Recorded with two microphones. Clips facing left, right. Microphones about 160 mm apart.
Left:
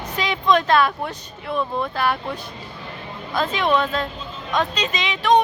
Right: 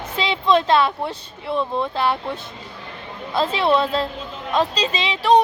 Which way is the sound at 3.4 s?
30° right (ahead or behind).